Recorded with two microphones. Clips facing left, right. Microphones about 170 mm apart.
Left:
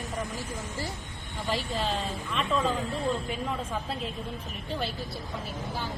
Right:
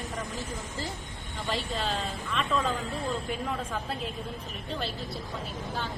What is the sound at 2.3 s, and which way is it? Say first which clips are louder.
Speech: left 1 dB; centre (ahead or behind).